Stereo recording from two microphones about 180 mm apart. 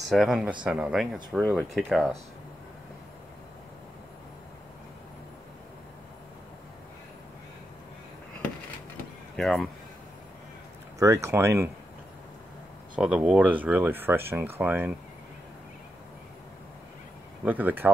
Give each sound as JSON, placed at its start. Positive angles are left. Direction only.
{"t": 0.1, "sound": "speech", "side_deg": 0}
{"t": 9.4, "sound": "speech", "side_deg": 0}
{"t": 11.0, "sound": "speech", "side_deg": -15}
{"t": 12.9, "sound": "speech", "side_deg": -5}
{"t": 17.5, "sound": "speech", "side_deg": -10}